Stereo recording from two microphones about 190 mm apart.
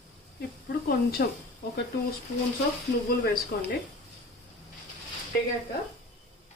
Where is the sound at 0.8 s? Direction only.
55° left (ahead or behind).